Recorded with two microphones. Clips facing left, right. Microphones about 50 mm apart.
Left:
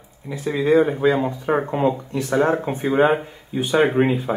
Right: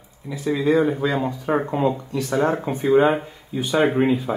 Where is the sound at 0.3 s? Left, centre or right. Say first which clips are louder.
Left 2 dB; left.